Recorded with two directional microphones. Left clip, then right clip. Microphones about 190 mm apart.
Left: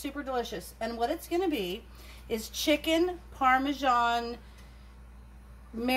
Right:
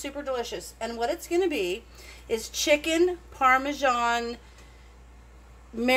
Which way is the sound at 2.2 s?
45° right (ahead or behind).